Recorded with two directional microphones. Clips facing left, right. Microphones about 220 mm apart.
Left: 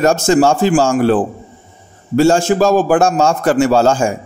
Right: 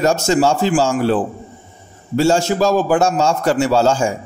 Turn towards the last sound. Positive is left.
turn(degrees=50)  # may be behind; listen again after turning